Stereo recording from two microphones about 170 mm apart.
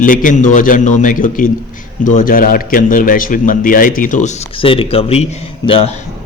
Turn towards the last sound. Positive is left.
turn(degrees=35)  # may be behind; listen again after turning